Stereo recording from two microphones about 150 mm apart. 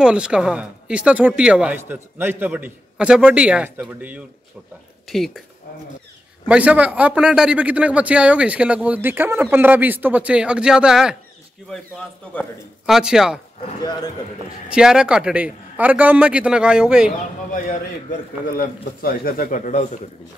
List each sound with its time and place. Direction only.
0.0 s a man's voice: 5° right (ahead or behind)
5.0 s a woman's voice: centre (ahead or behind)
6.4 s a man's voice: 10° right (ahead or behind)
12.8 s speech: 5° right (ahead or behind)
13.7 s a man's voice: 25° left (ahead or behind)
14.7 s a man's voice: 5° right (ahead or behind)
18.5 s speech: 75° left (ahead or behind); by 20.0 s 50° left (ahead or behind)